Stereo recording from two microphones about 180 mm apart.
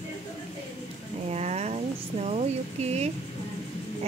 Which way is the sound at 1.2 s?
35° right (ahead or behind).